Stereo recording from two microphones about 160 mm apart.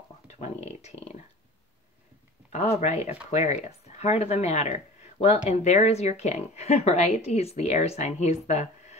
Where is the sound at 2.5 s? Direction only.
45° left (ahead or behind).